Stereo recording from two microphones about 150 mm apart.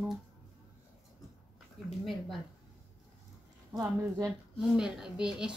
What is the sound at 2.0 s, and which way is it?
Speech, centre (ahead or behind).